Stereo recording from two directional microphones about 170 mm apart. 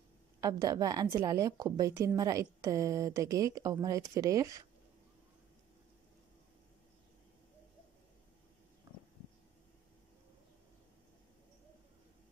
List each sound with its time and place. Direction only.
0.4 s a woman's voice: 20° right (ahead or behind)